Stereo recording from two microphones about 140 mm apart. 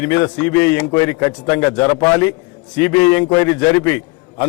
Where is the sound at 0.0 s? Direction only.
15° left (ahead or behind).